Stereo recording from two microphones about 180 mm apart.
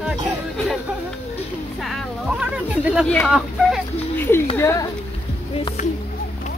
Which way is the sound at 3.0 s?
5° left (ahead or behind).